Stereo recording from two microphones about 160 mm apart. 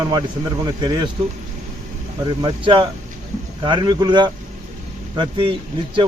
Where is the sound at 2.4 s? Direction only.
30° right (ahead or behind).